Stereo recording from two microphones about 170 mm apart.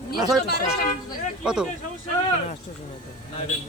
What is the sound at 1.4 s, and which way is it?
Speech, 5° right (ahead or behind).